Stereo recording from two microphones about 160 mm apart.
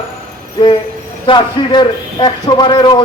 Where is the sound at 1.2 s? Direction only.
30° left (ahead or behind).